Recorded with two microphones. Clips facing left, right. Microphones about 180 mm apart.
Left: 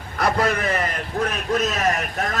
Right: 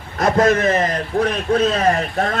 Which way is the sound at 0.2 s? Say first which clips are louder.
Right 6 dB; 45° right (ahead or behind).